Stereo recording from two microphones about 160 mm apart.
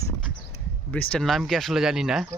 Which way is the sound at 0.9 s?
10° left (ahead or behind).